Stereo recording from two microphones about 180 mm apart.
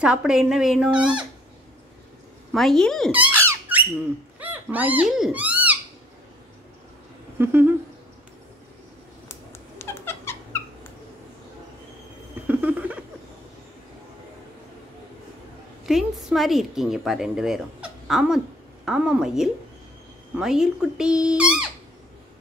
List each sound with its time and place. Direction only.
0.0 s speech: 5° right (ahead or behind)
2.5 s speech: centre (ahead or behind)
3.1 s squeak: 10° right (ahead or behind)
4.4 s speech: 10° right (ahead or behind)
7.3 s a sound: 10° right (ahead or behind)
9.3 s cat: 15° left (ahead or behind)
12.4 s a sound: 10° right (ahead or behind)
15.8 s a woman's voice: centre (ahead or behind)